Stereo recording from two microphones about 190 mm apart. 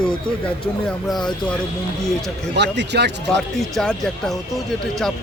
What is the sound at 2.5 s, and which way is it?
Speech, 65° right (ahead or behind).